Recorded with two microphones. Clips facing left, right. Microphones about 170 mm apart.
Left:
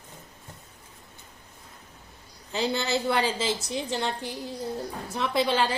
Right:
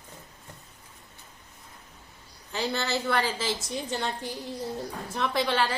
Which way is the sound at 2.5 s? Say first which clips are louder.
Left 2 dB; 15° left (ahead or behind).